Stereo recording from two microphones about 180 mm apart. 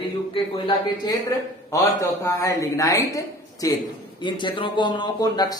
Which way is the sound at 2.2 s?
15° left (ahead or behind).